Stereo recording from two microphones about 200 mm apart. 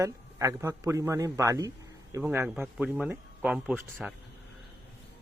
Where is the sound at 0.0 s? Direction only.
15° right (ahead or behind).